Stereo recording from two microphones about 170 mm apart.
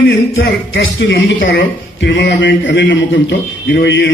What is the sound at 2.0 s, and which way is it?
A man's voice, 90° left.